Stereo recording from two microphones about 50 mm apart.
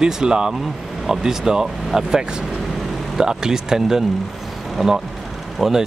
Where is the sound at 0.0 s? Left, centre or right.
Centre.